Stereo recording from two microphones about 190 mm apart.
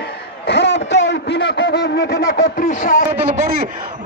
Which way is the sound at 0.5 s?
65° left (ahead or behind).